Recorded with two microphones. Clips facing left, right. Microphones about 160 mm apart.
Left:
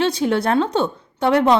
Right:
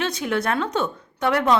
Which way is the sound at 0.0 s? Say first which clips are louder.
Left 5 dB; 30° left (ahead or behind).